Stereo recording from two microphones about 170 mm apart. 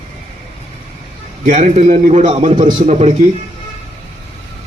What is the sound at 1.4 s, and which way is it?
Speech, 45° right (ahead or behind).